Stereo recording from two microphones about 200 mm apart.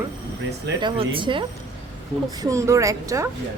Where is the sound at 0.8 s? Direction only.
25° right (ahead or behind).